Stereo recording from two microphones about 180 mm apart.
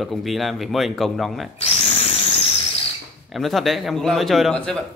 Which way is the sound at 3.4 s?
Centre (ahead or behind).